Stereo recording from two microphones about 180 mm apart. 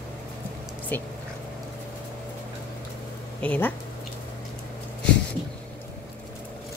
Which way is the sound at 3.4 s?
10° left (ahead or behind).